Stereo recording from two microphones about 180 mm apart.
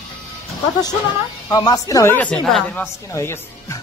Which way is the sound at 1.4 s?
20° left (ahead or behind).